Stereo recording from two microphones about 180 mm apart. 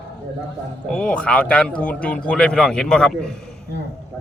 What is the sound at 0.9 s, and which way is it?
A man's voice, 5° left (ahead or behind).